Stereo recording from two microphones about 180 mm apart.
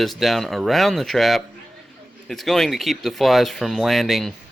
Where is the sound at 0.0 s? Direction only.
Centre (ahead or behind).